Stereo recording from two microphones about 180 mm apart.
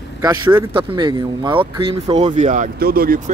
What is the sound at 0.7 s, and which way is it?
Speech, 25° right (ahead or behind).